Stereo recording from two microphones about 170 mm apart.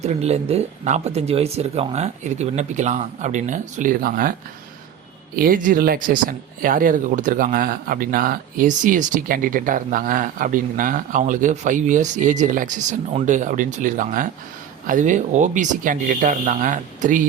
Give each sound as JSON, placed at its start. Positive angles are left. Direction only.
{"t": 0.0, "sound": "speech", "side_deg": -40}
{"t": 5.4, "sound": "speech", "side_deg": -55}